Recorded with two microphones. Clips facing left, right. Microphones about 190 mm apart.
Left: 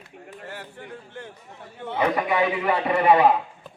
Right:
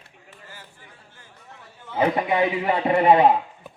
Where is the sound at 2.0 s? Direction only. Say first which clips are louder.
Right 1 dB; 25° right (ahead or behind).